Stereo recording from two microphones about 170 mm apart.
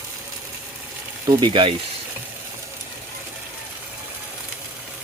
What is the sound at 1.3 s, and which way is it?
Speech, 25° right (ahead or behind).